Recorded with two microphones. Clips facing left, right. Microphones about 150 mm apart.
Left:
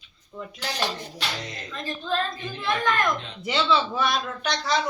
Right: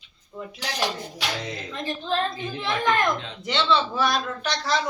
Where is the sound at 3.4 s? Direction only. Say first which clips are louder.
Even; 5° left (ahead or behind).